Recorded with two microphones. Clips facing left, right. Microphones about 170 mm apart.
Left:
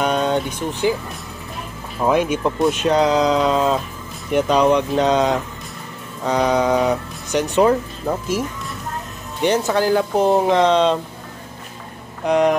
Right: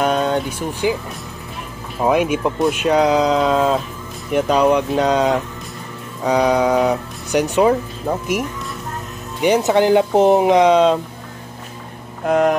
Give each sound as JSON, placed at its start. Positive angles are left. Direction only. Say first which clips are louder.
{"t": 0.0, "sound": "vehicle", "louder": "right 1 dB", "side_deg": 0}
{"t": 2.0, "sound": "speech", "louder": "right 1 dB", "side_deg": -10}
{"t": 9.4, "sound": "speech", "louder": "right 3 dB", "side_deg": -15}
{"t": 12.3, "sound": "speech", "louder": "right 1 dB", "side_deg": 0}